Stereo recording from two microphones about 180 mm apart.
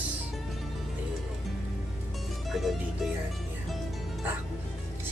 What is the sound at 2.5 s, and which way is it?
Speech, centre (ahead or behind).